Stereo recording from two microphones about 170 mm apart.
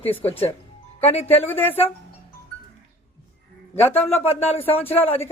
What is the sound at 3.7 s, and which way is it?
Speech, 10° left (ahead or behind).